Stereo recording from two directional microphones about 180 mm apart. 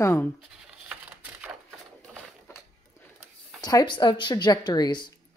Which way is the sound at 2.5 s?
15° left (ahead or behind).